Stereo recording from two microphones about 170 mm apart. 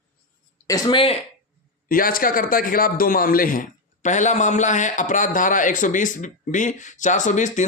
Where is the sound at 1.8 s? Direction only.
55° left (ahead or behind).